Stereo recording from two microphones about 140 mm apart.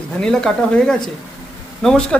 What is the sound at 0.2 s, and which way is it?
A man's voice, 5° left (ahead or behind).